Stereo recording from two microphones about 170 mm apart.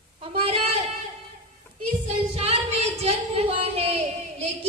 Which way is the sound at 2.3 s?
35° right (ahead or behind).